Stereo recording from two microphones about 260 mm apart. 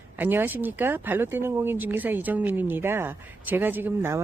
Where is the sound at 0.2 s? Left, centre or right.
Centre.